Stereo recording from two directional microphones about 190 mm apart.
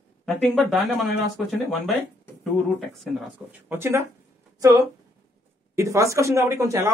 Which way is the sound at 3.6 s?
10° right (ahead or behind).